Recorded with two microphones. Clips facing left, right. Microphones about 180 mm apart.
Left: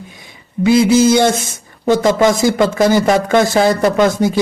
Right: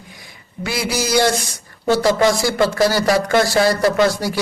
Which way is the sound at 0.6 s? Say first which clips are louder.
Left 12 dB; 25° left (ahead or behind).